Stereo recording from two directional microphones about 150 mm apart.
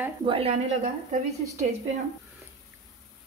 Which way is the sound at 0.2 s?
40° right (ahead or behind).